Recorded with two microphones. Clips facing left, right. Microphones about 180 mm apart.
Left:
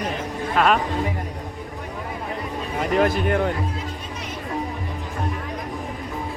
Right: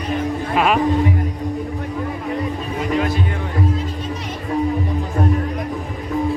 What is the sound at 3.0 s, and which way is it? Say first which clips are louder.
Speech: left 3 dB; 60° left (ahead or behind).